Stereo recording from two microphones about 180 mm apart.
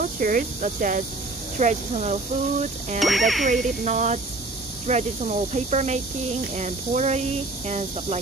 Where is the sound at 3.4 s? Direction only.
45° right (ahead or behind).